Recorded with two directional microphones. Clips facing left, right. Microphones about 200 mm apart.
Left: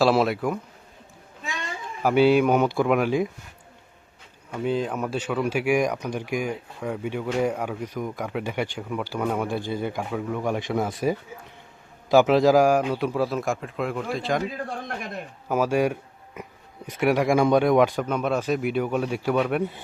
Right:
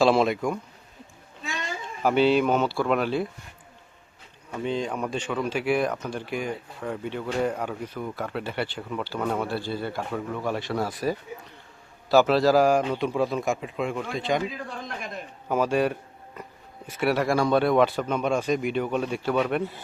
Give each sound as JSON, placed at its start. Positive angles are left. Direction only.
{"t": 0.0, "sound": "a man's voice", "side_deg": 5}
{"t": 2.0, "sound": "speech", "side_deg": 10}
{"t": 4.5, "sound": "speech", "side_deg": 5}
{"t": 10.1, "sound": "a man's voice", "side_deg": 5}
{"t": 10.4, "sound": "speech", "side_deg": 15}
{"t": 12.0, "sound": "a man's voice", "side_deg": 15}
{"t": 15.4, "sound": "speech", "side_deg": 10}